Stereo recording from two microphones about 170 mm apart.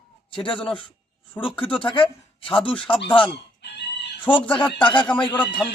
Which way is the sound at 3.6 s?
85° left.